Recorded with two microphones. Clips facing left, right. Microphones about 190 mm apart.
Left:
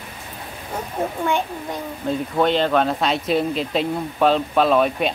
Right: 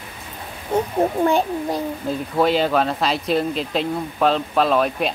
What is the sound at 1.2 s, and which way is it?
Speech, 35° right (ahead or behind).